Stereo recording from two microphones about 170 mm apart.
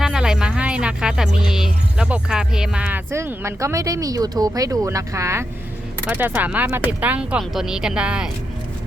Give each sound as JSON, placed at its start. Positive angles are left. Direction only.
{"t": 0.0, "sound": "music", "side_deg": -5}
{"t": 1.4, "sound": "speech", "side_deg": -5}